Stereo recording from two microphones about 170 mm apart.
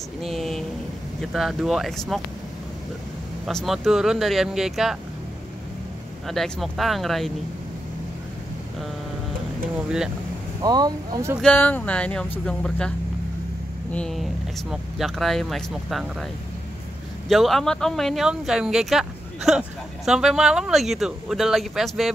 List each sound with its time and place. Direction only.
0.2 s vehicle: centre (ahead or behind)
1.2 s speech: centre (ahead or behind)
3.4 s speech: centre (ahead or behind)
6.2 s speech: centre (ahead or behind)
9.8 s speech: 5° right (ahead or behind)
10.6 s speech: 25° right (ahead or behind)
11.4 s speech: 10° left (ahead or behind)
13.9 s speech: 5° left (ahead or behind)
17.3 s speech: centre (ahead or behind)